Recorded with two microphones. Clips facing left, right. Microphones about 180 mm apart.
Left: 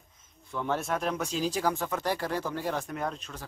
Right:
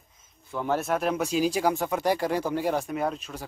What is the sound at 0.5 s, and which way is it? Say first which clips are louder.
Speech: right 4 dB; 5° right (ahead or behind).